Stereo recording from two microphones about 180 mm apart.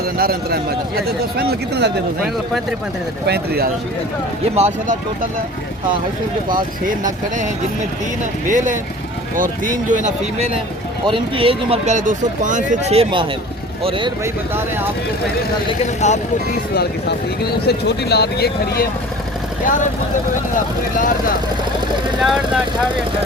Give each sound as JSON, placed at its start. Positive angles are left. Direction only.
{"t": 0.2, "sound": "speech", "side_deg": -55}
{"t": 3.2, "sound": "speech", "side_deg": -60}
{"t": 4.4, "sound": "speech", "side_deg": -40}
{"t": 6.5, "sound": "speech", "side_deg": -45}
{"t": 8.4, "sound": "speech", "side_deg": -45}
{"t": 11.0, "sound": "speech", "side_deg": -30}
{"t": 16.0, "sound": "speech", "side_deg": 40}
{"t": 16.7, "sound": "speech", "side_deg": 65}
{"t": 22.2, "sound": "speech", "side_deg": 0}